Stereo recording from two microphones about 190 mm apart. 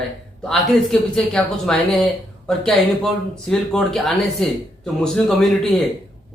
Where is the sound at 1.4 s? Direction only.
5° left (ahead or behind).